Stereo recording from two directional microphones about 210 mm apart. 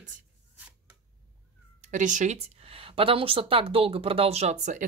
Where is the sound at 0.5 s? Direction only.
10° right (ahead or behind).